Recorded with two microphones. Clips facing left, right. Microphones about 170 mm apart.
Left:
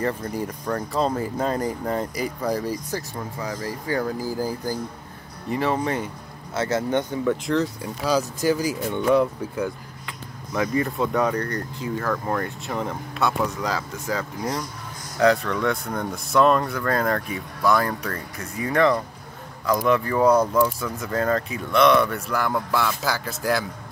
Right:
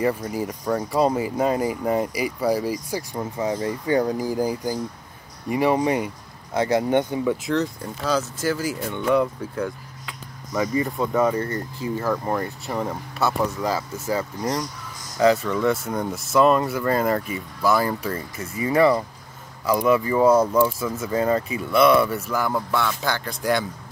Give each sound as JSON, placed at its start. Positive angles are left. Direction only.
{"t": 0.0, "sound": "speech", "side_deg": -10}
{"t": 3.3, "sound": "speech", "side_deg": -20}
{"t": 7.4, "sound": "speech", "side_deg": 0}
{"t": 7.8, "sound": "speech", "side_deg": 10}
{"t": 9.1, "sound": "speech", "side_deg": 0}
{"t": 12.6, "sound": "speech", "side_deg": 0}